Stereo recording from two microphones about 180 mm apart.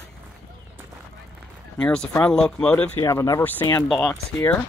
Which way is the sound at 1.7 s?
5° left (ahead or behind).